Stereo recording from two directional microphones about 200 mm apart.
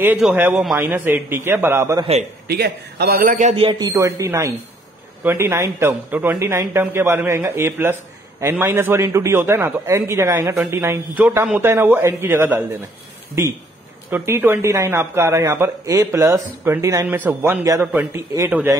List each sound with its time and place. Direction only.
0.0 s a man's voice: 10° right (ahead or behind)
2.4 s a man's voice: 50° right (ahead or behind)
3.5 s a man's voice: 25° right (ahead or behind)
14.1 s a man's voice: 10° right (ahead or behind)